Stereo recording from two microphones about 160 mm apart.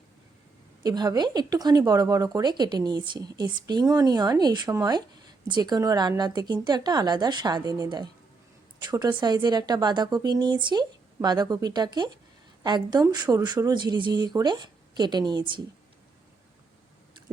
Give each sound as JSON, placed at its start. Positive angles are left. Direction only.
{"t": 0.8, "sound": "speech", "side_deg": -25}